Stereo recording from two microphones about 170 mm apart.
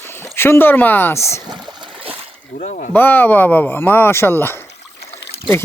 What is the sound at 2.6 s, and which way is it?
Speech, 50° left (ahead or behind).